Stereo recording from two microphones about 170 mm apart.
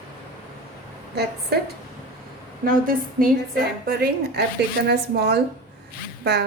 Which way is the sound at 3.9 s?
70° right (ahead or behind).